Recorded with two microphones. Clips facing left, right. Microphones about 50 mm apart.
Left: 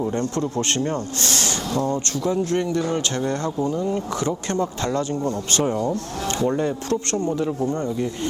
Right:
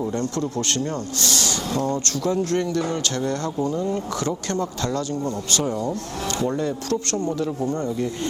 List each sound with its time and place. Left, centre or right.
0.1 s a man's voice: left